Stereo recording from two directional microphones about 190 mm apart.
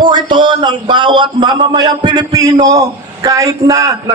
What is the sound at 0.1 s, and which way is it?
A man's voice, 25° right (ahead or behind).